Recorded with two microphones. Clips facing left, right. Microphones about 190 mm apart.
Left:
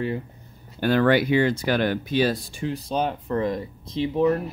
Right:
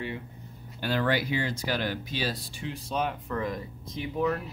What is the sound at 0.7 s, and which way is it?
Speech, 55° left (ahead or behind).